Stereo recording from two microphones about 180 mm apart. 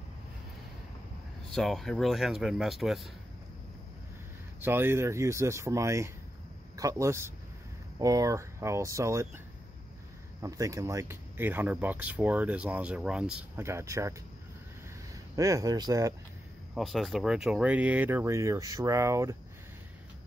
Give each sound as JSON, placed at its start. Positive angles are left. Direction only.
{"t": 1.5, "sound": "speech", "side_deg": 0}
{"t": 4.6, "sound": "speech", "side_deg": -10}
{"t": 10.4, "sound": "speech", "side_deg": -15}
{"t": 15.3, "sound": "speech", "side_deg": -20}
{"t": 16.7, "sound": "speech", "side_deg": 0}